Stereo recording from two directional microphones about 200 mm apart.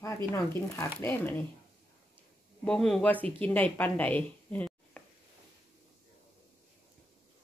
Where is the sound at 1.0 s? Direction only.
10° left (ahead or behind).